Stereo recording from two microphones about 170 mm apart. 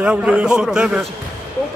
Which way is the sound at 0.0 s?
5° right (ahead or behind).